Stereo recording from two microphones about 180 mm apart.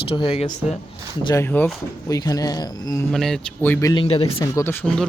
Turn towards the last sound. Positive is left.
turn(degrees=10)  # may be behind; listen again after turning